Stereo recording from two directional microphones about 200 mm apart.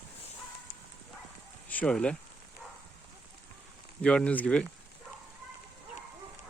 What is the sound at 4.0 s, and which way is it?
Speech, 5° left (ahead or behind).